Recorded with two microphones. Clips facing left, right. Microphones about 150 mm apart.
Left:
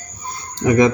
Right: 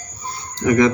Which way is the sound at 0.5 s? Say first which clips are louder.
Left 1 dB; 20° left (ahead or behind).